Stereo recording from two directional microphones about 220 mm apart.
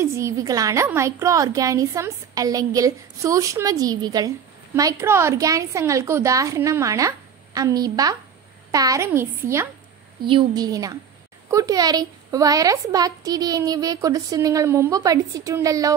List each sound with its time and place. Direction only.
0.0 s a woman's voice: 15° right (ahead or behind)